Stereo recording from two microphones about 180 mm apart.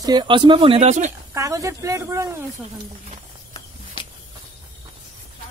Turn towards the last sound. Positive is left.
turn(degrees=25)  # may be behind; listen again after turning